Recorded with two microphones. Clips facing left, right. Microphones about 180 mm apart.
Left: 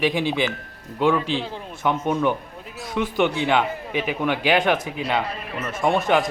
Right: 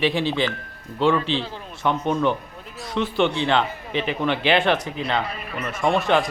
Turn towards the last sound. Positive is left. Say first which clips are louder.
# even
turn(degrees=10)  # may be behind; listen again after turning